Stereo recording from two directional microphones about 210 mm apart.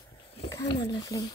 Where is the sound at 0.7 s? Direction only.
20° left (ahead or behind).